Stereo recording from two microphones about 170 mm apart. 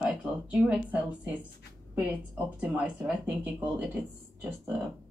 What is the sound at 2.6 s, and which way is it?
Speech, 5° right (ahead or behind).